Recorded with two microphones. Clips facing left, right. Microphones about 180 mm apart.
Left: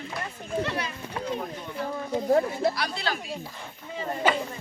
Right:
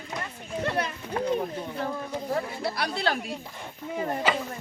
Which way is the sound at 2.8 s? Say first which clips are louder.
Right 3 dB; 55° right (ahead or behind).